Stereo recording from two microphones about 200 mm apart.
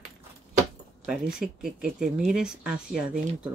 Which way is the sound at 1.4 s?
5° right (ahead or behind).